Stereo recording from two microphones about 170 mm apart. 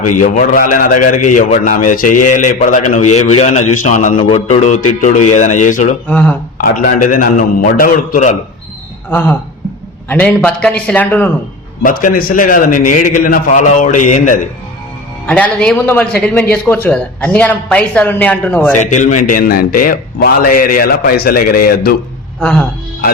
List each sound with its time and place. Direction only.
0.1 s a man's voice: 50° left (ahead or behind)
4.1 s a man's voice: 30° left (ahead or behind); by 5.9 s 50° left (ahead or behind)
6.1 s a man's voice: 5° left (ahead or behind)
6.6 s a man's voice: 55° left (ahead or behind)
9.0 s a man's voice: 10° left (ahead or behind)
11.8 s a man's voice: 55° left (ahead or behind)
15.3 s a man's voice: 5° left (ahead or behind)
18.8 s a man's voice: 45° left (ahead or behind); by 21.9 s 60° left (ahead or behind)
22.4 s speech: 5° left (ahead or behind)